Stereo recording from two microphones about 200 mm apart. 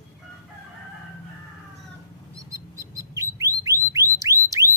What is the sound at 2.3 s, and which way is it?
Bird, 15° right (ahead or behind).